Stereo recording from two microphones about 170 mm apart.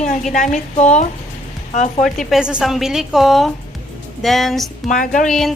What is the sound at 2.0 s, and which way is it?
A woman's voice, centre (ahead or behind).